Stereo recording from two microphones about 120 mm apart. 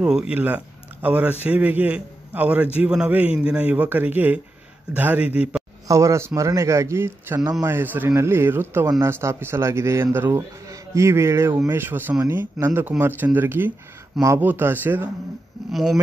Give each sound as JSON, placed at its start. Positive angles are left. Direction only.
{"t": 0.0, "sound": "a man's voice", "side_deg": -10}
{"t": 5.9, "sound": "a man's voice", "side_deg": -25}
{"t": 15.7, "sound": "speech", "side_deg": 0}